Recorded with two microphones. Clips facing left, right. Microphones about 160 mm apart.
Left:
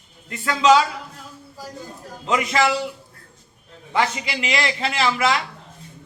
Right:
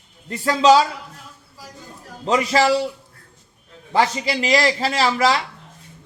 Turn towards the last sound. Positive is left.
turn(degrees=-35)  # may be behind; listen again after turning